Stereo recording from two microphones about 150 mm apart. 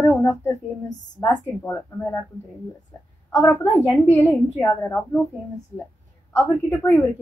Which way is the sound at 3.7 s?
15° left (ahead or behind).